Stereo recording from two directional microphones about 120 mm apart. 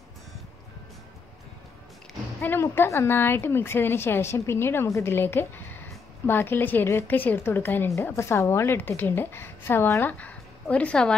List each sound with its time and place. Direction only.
2.4 s a woman's voice: 15° left (ahead or behind)